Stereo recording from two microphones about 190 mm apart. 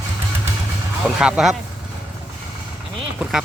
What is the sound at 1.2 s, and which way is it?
Speech, 5° right (ahead or behind).